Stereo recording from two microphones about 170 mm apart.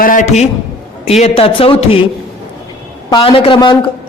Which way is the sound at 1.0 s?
35° left (ahead or behind).